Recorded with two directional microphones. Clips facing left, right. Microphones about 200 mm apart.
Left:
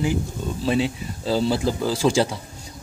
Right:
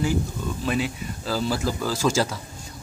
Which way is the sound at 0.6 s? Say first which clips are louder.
Left 5 dB; 30° left (ahead or behind).